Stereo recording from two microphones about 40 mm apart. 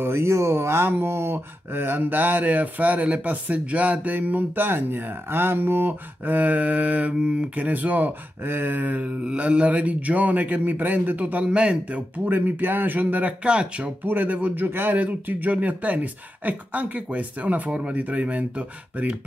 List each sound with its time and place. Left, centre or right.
0.0 s speech: right
1.7 s speech: right
6.3 s speech: right
7.5 s speech: right
9.2 s speech: right
11.4 s speech: right
12.3 s speech: right
13.0 s speech: right
14.0 s speech: right
14.5 s a man's voice: right
15.0 s speech: right